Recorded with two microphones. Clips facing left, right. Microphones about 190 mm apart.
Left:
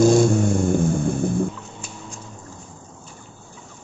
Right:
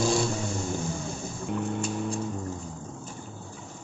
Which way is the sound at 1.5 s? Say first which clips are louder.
Right 10 dB; 60° right (ahead or behind).